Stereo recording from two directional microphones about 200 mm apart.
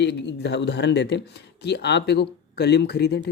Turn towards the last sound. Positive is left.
turn(degrees=55)  # may be behind; listen again after turning